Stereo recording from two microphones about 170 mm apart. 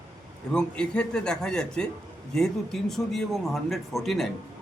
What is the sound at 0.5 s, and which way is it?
A man's voice, 5° left (ahead or behind).